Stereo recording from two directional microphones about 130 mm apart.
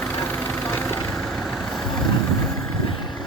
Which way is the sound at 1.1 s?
Centre (ahead or behind).